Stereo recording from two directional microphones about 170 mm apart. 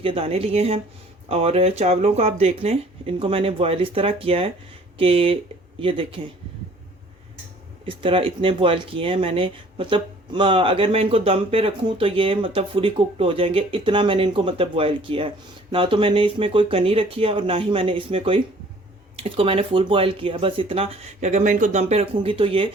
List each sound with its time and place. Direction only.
0.0 s speech: 35° right (ahead or behind)
7.9 s speech: 30° right (ahead or behind)